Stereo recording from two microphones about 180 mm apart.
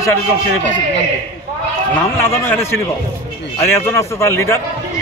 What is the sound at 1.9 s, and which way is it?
A man's voice, 10° left (ahead or behind).